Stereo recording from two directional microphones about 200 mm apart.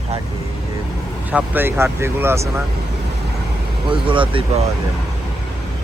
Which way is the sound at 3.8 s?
25° right (ahead or behind).